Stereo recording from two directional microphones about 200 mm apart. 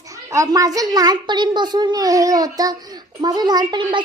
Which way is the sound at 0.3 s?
15° right (ahead or behind).